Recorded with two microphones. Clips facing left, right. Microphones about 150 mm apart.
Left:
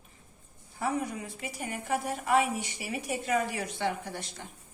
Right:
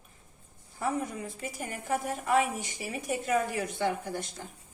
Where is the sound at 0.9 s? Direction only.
45° right (ahead or behind).